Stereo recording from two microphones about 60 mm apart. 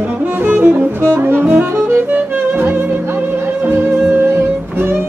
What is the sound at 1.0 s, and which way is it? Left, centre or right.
Saxophone, right.